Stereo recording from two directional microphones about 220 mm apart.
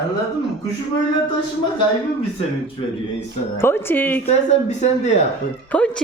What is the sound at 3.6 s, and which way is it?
Speech, 10° left (ahead or behind).